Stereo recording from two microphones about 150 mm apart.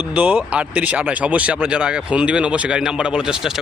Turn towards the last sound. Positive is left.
turn(degrees=-5)  # may be behind; listen again after turning